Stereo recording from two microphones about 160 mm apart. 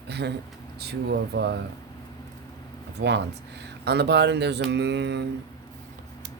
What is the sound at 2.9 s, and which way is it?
Speech, 90° right.